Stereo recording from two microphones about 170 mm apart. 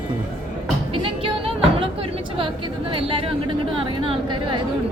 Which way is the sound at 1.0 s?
35° right (ahead or behind).